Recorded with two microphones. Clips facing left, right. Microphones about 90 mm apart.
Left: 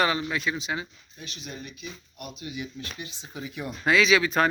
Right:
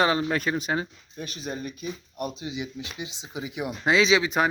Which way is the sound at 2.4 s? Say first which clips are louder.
Right 3 dB; 20° right (ahead or behind).